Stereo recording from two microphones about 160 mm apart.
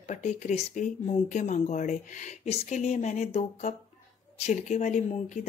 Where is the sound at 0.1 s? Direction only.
50° left (ahead or behind).